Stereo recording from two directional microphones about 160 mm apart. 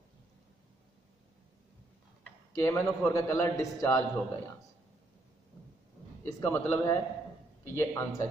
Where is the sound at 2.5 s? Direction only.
15° left (ahead or behind).